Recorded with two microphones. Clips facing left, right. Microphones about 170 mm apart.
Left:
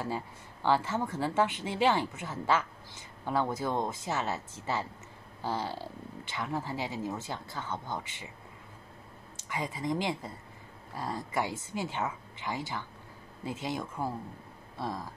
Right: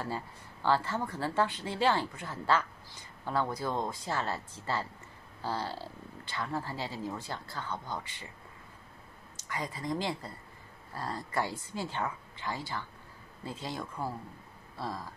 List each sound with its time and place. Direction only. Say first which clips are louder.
0.7 s a woman's voice: left 1 dB; 15° left (ahead or behind)
9.5 s speech: left 2 dB; 20° left (ahead or behind)